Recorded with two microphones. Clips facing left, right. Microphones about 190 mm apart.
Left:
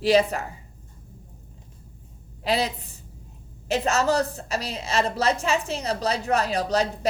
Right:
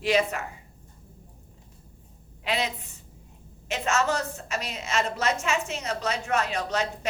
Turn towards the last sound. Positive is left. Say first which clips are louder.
# left 5 dB
turn(degrees=35)  # may be behind; listen again after turning